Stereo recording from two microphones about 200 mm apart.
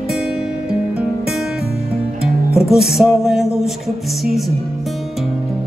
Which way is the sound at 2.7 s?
Centre (ahead or behind).